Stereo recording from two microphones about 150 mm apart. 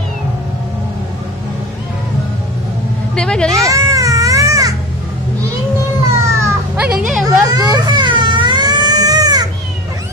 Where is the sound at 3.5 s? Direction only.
20° right (ahead or behind).